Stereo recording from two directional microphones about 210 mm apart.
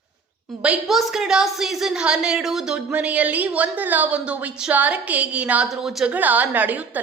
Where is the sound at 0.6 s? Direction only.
5° right (ahead or behind).